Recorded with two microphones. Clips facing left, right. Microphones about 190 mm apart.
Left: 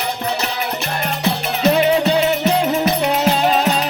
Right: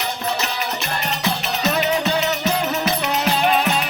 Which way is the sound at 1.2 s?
30° left (ahead or behind).